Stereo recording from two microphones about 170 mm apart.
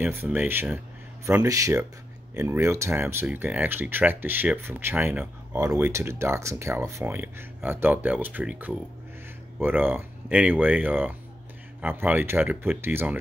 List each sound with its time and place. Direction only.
0.0 s speech: 10° right (ahead or behind)